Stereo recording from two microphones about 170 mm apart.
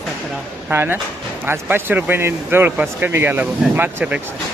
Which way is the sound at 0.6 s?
15° right (ahead or behind).